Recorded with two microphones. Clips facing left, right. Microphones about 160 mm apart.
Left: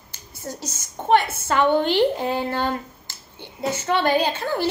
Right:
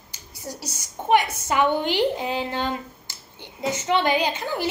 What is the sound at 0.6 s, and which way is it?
A woman's voice, 15° right (ahead or behind).